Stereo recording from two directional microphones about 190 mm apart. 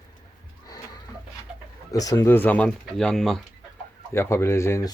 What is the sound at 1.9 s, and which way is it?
Speech, 20° left (ahead or behind).